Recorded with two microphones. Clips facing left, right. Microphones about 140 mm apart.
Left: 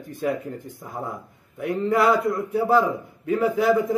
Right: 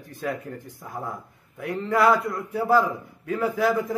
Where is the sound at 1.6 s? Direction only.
25° left (ahead or behind).